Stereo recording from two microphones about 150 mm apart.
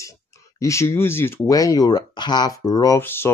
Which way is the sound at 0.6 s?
20° left (ahead or behind).